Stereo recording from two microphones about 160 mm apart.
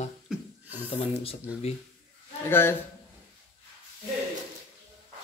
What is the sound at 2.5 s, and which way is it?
Speech, 15° left (ahead or behind).